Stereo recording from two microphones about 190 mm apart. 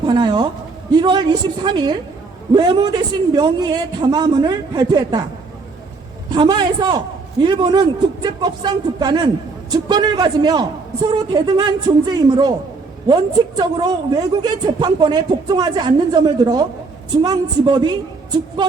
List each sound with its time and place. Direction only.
0.0 s a sound: 25° right (ahead or behind)
0.9 s a woman's voice: 25° right (ahead or behind)
6.3 s a woman's voice: 25° right (ahead or behind)